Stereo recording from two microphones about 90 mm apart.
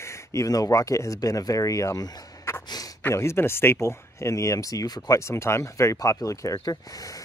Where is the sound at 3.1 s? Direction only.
30° left (ahead or behind).